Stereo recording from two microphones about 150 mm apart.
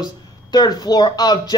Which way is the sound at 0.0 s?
25° left (ahead or behind).